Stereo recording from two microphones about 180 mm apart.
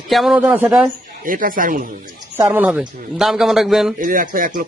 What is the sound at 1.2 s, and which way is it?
Speech, 50° right (ahead or behind).